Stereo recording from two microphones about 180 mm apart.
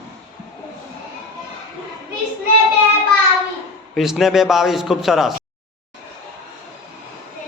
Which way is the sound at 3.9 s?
Centre (ahead or behind).